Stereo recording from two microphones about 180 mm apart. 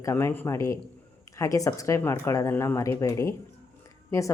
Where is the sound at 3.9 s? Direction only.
15° left (ahead or behind).